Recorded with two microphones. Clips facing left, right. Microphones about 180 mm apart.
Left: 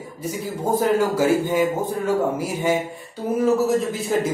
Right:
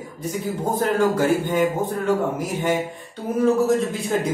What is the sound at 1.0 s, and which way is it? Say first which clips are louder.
A man's voice: even; 10° left (ahead or behind).